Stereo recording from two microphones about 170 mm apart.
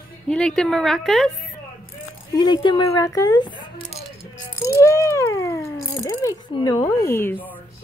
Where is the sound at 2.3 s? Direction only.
25° left (ahead or behind).